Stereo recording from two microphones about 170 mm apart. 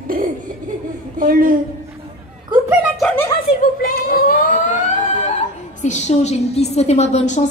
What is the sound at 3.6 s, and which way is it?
Speech, 60° left (ahead or behind).